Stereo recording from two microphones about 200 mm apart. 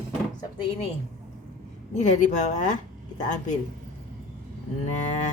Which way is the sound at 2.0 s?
35° left (ahead or behind).